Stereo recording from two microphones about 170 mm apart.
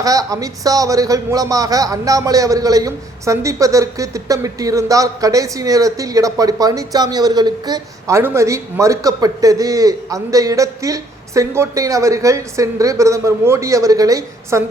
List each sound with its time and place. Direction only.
0.0 s a man's voice: 20° right (ahead or behind)